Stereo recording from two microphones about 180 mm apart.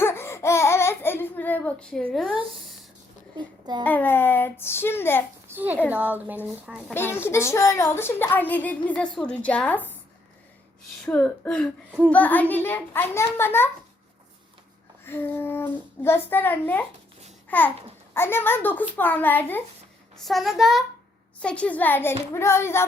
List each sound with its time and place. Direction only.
0.0 s laughter: 15° left (ahead or behind)
3.3 s a child's voice: 25° right (ahead or behind)
3.8 s a woman's voice: 10° left (ahead or behind)
5.5 s a sound: 10° right (ahead or behind)
5.9 s a woman's voice: 10° right (ahead or behind)
6.9 s a woman's voice: 15° left (ahead or behind)
11.0 s speech: 5° left (ahead or behind)
11.9 s a child's voice: 5° right (ahead or behind)
12.1 s a woman's voice: 10° left (ahead or behind)
15.0 s a woman's voice: 10° left (ahead or behind)
20.2 s a woman's voice: centre (ahead or behind)